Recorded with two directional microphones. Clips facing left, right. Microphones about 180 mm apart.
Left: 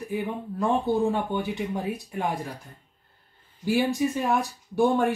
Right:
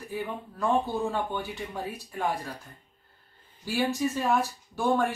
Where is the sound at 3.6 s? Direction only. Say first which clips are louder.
Left 4 dB; 15° left (ahead or behind).